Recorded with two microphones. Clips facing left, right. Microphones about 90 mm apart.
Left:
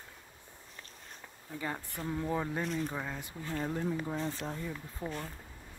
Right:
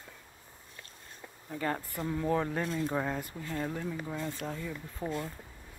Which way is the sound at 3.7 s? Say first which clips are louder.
Left 2 dB; 25° left (ahead or behind).